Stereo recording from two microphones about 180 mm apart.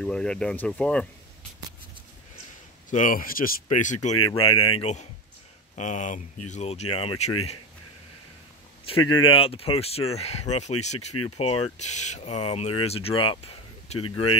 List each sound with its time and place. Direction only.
0.0 s speech: 5° left (ahead or behind)
2.9 s a man's voice: 45° left (ahead or behind)
3.6 s speech: 40° left (ahead or behind)
4.3 s speech: 30° left (ahead or behind)
9.2 s speech: 30° left (ahead or behind)